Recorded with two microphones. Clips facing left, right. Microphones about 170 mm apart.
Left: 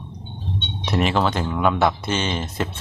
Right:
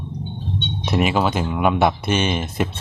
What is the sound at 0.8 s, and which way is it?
Speech, 10° right (ahead or behind).